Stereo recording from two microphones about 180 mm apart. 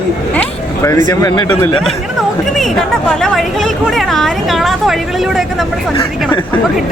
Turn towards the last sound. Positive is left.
turn(degrees=0)  # may be behind; listen again after turning